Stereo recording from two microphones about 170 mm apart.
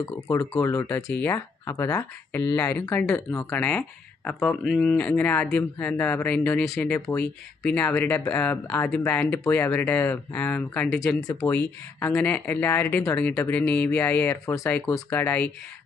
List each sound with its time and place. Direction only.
0.0 s speech: 15° left (ahead or behind)
11.9 s speech: 10° left (ahead or behind)